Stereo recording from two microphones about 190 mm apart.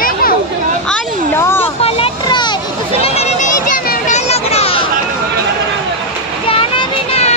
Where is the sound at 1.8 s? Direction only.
30° left (ahead or behind).